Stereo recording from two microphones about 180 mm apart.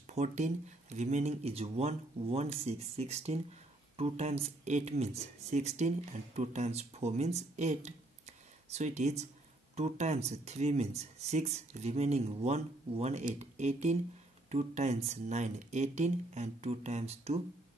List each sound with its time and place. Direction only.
0.0 s speech: 40° right (ahead or behind)